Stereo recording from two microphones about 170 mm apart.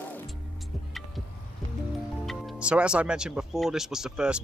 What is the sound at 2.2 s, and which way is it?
Speech, centre (ahead or behind).